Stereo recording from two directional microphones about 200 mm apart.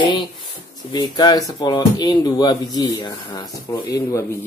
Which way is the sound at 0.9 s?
20° left (ahead or behind).